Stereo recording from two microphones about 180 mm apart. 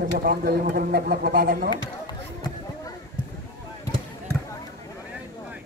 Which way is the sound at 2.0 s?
20° left (ahead or behind).